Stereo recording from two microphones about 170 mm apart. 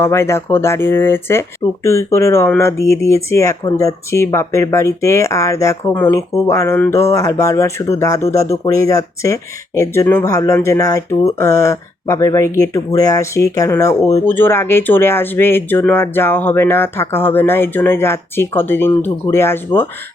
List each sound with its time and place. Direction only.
0.0 s speech: 15° left (ahead or behind)